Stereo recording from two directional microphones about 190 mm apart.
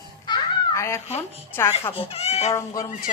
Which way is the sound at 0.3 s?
15° left (ahead or behind).